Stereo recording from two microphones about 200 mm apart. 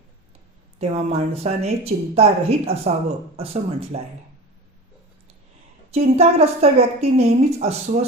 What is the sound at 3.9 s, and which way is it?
Speech, 30° right (ahead or behind).